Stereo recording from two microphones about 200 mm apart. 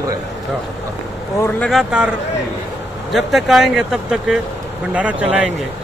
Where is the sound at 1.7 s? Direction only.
Centre (ahead or behind).